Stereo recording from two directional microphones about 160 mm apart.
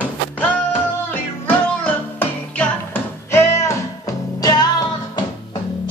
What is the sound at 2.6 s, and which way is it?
Music, 15° left (ahead or behind).